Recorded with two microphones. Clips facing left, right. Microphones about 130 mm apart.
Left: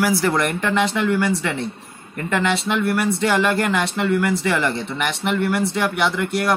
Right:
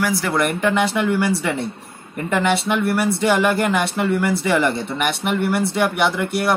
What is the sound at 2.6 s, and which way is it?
Speech, 5° right (ahead or behind).